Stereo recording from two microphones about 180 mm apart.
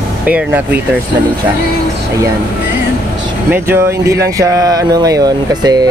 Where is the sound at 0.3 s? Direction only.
10° right (ahead or behind).